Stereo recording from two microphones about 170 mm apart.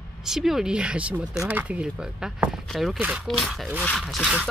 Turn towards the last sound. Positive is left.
turn(degrees=0)  # may be behind; listen again after turning